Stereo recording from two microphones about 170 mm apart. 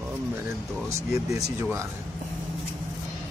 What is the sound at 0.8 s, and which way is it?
Speech, 20° right (ahead or behind).